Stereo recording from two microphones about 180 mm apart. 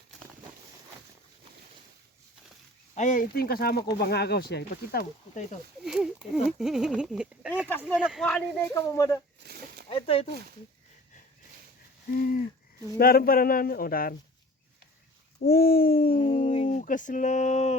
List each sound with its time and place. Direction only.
2.9 s speech: 45° left (ahead or behind)
5.8 s speech: 5° right (ahead or behind)
8.6 s speech: 15° left (ahead or behind)
9.5 s a sound: 65° right (ahead or behind)
9.9 s speech: 30° left (ahead or behind)
12.1 s speech: 50° left (ahead or behind)
15.4 s speech: 55° left (ahead or behind)
16.1 s dog: 30° left (ahead or behind)
16.6 s speech: 45° left (ahead or behind)